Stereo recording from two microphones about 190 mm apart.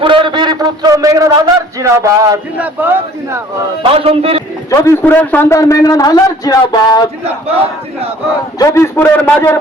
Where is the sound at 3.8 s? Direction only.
30° right (ahead or behind).